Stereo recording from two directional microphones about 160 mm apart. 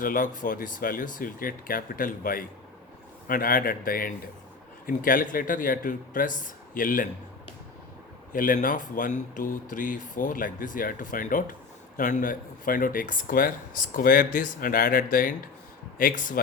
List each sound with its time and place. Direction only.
0.0 s speech: 55° left (ahead or behind)
8.3 s speech: 60° left (ahead or behind)